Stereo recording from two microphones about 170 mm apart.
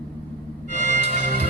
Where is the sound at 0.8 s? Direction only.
40° right (ahead or behind).